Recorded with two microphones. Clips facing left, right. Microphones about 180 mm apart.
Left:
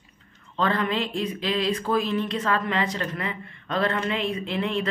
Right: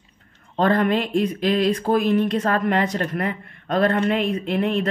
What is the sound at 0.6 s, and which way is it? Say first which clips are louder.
Speech: right 6 dB; 45° right (ahead or behind).